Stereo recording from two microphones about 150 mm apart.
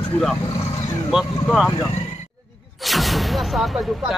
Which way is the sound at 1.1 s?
Centre (ahead or behind).